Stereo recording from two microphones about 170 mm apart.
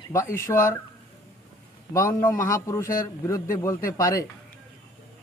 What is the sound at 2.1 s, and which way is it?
A man's voice, 15° left (ahead or behind).